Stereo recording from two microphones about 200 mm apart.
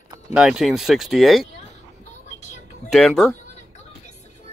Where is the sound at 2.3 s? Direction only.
35° left (ahead or behind).